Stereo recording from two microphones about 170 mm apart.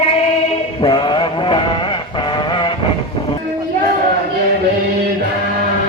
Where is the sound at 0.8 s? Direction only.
30° left (ahead or behind).